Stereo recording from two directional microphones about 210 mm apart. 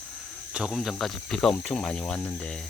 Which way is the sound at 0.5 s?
Centre (ahead or behind).